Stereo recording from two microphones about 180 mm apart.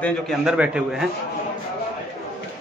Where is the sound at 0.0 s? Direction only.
Centre (ahead or behind).